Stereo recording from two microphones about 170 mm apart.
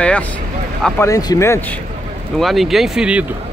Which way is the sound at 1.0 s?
20° left (ahead or behind).